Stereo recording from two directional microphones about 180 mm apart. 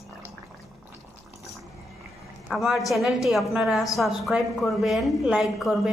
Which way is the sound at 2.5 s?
Centre (ahead or behind).